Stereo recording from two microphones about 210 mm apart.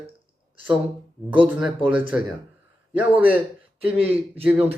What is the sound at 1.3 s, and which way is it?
Speech, 5° right (ahead or behind).